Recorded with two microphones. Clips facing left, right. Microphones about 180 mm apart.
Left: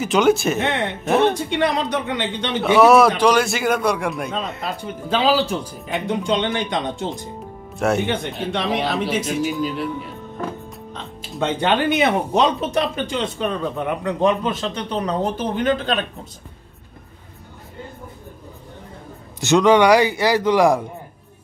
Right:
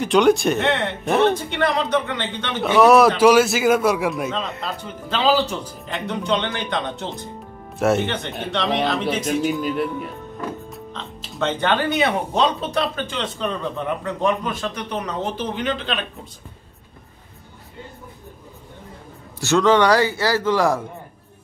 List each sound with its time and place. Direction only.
0.0 s a man's voice: centre (ahead or behind)
0.7 s speech: 15° left (ahead or behind)
1.0 s a man's voice: centre (ahead or behind)
1.5 s speech: 15° left (ahead or behind)
2.6 s a man's voice: centre (ahead or behind)
7.8 s a man's voice: centre (ahead or behind)
10.9 s speech: 10° left (ahead or behind); by 15.3 s 35° left (ahead or behind)
15.3 s speech: 45° left (ahead or behind)
19.4 s speech: 15° left (ahead or behind)